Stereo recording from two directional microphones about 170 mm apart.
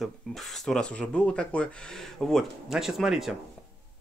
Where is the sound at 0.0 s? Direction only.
Centre (ahead or behind).